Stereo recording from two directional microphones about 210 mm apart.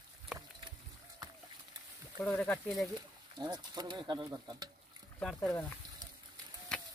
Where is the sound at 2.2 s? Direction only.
5° left (ahead or behind).